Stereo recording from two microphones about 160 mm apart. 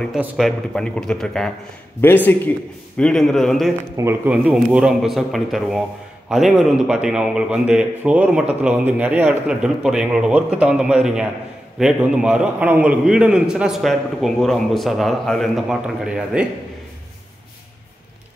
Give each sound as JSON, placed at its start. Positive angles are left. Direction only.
{"t": 0.2, "sound": "a man's voice", "side_deg": 0}
{"t": 3.9, "sound": "a man's voice", "side_deg": -15}